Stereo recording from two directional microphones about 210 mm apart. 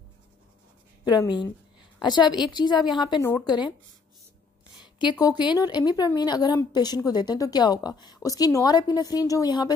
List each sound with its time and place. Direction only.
1.0 s a woman's voice: 20° left (ahead or behind)
4.7 s a sound: 20° left (ahead or behind)
5.2 s a woman's voice: 20° left (ahead or behind)